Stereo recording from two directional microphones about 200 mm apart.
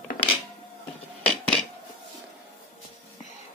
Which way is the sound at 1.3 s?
5° left (ahead or behind).